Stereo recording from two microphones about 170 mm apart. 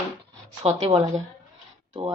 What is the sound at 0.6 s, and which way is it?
Speech, 35° right (ahead or behind).